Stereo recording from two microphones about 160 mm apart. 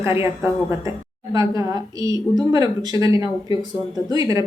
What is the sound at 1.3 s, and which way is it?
A woman's voice, 20° right (ahead or behind).